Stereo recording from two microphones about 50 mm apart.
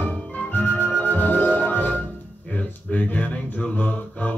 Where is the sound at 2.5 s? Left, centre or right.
Left.